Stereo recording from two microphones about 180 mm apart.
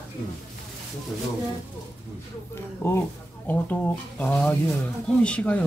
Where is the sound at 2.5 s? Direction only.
15° left (ahead or behind).